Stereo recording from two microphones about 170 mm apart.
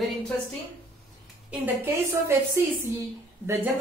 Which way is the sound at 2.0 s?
15° right (ahead or behind).